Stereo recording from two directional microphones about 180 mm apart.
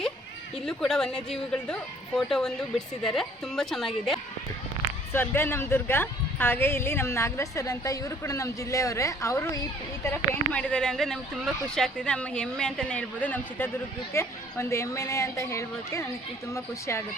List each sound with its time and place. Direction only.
0.6 s speech: 5° left (ahead or behind)
5.1 s a woman's voice: 15° left (ahead or behind)
10.1 s a woman's voice: 5° left (ahead or behind)